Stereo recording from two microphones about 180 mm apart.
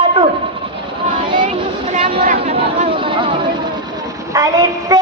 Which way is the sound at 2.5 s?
30° right (ahead or behind).